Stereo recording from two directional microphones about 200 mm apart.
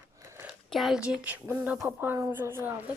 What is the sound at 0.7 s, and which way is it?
A woman's voice, centre (ahead or behind).